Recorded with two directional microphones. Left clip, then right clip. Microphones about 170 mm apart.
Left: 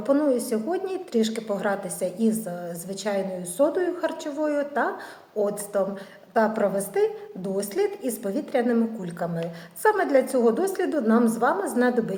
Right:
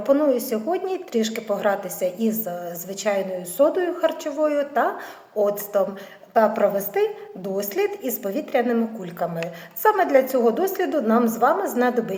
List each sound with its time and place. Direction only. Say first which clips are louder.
0.0 s a woman's voice: right 3 dB; 25° left (ahead or behind)